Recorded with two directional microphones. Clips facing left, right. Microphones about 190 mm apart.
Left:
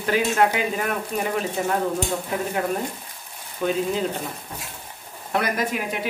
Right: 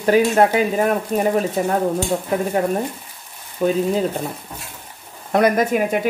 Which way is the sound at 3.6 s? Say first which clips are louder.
Right 5 dB; 40° right (ahead or behind).